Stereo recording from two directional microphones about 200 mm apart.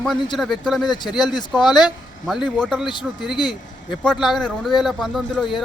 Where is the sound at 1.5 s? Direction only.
Centre (ahead or behind).